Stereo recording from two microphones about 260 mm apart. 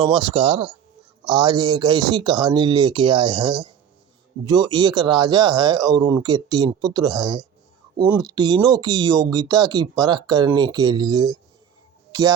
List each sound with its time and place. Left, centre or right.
0.0 s speech: centre